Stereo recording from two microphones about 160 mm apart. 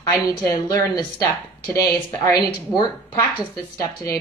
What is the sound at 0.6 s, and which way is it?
A woman's voice, 25° left (ahead or behind).